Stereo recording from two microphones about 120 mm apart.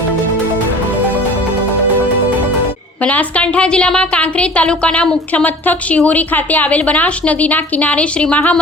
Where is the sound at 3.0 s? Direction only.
10° left (ahead or behind).